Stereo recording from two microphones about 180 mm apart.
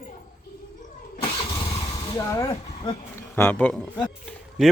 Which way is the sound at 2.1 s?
20° left (ahead or behind).